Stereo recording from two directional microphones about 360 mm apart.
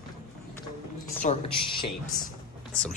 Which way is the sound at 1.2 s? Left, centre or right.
Centre.